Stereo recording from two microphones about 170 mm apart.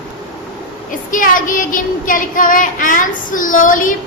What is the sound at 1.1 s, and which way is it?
Child singing, 50° left (ahead or behind).